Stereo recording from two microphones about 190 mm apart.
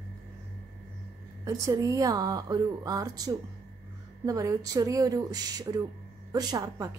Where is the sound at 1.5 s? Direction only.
20° right (ahead or behind).